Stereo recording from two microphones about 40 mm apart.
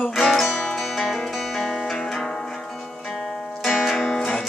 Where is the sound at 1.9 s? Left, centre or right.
Centre.